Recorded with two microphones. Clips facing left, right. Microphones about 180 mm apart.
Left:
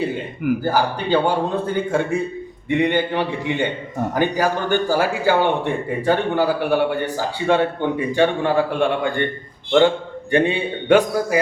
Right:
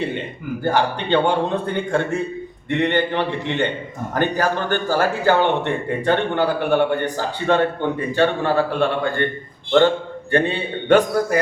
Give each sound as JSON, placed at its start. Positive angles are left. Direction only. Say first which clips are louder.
{"t": 0.6, "sound": "a man's voice", "louder": "even", "side_deg": 5}
{"t": 10.3, "sound": "speech", "louder": "left 2 dB", "side_deg": 15}